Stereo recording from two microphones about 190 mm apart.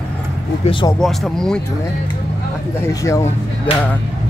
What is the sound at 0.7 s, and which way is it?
Speech, 25° left (ahead or behind).